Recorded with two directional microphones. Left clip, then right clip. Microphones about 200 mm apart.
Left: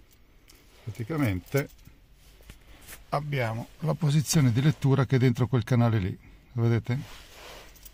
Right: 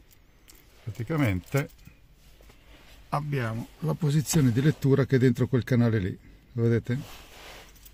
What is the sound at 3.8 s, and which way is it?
Speech, 30° left (ahead or behind).